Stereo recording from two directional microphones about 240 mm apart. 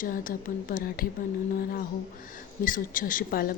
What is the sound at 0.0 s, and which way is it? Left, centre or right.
Speech, left.